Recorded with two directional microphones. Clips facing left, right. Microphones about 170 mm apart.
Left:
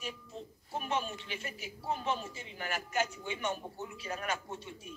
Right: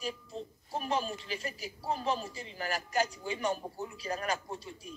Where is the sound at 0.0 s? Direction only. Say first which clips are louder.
Right 4 dB; 35° right (ahead or behind).